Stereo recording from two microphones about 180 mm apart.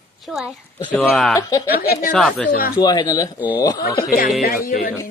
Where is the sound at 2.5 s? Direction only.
55° left (ahead or behind).